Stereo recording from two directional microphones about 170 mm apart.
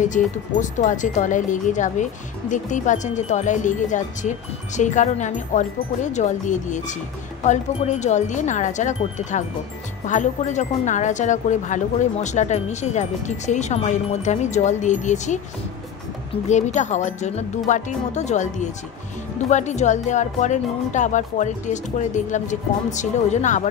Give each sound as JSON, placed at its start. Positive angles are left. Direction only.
{"t": 0.0, "sound": "speech", "side_deg": 45}
{"t": 16.4, "sound": "speech", "side_deg": 45}